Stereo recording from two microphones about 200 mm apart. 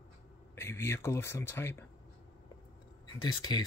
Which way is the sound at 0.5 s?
15° left (ahead or behind).